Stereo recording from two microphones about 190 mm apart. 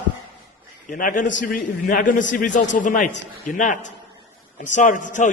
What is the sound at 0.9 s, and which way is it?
A man's voice, 45° left (ahead or behind).